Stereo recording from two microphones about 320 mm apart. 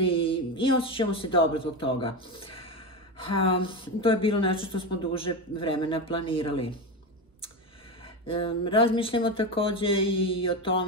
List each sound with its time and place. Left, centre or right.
0.0 s speech: centre
8.3 s speech: centre